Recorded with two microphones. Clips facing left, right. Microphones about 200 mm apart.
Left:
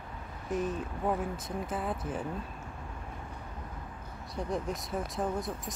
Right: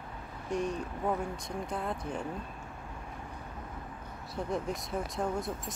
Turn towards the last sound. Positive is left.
turn(degrees=0)  # may be behind; listen again after turning